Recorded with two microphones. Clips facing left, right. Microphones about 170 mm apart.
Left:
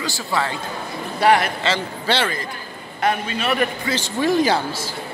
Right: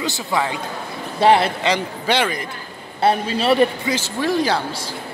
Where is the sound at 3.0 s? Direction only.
35° right (ahead or behind).